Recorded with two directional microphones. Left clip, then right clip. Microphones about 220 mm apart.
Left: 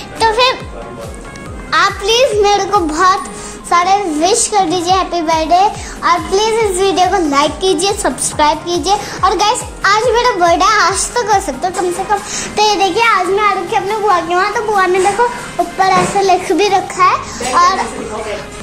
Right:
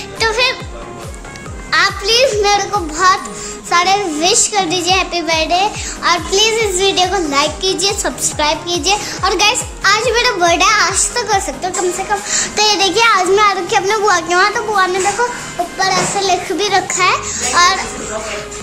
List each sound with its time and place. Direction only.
0.2 s music: centre (ahead or behind)
1.7 s a sound: 5° right (ahead or behind)
3.7 s a child's voice: 10° right (ahead or behind); by 14.4 s 30° right (ahead or behind)
15.8 s a child's voice: 10° left (ahead or behind)
16.9 s a child's voice: 15° right (ahead or behind)